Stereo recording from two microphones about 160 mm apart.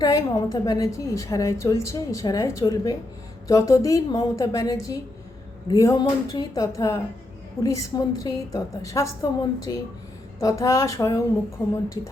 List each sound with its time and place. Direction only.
0.0 s a woman's voice: 25° left (ahead or behind)